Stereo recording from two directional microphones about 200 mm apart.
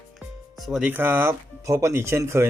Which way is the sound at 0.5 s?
Centre (ahead or behind).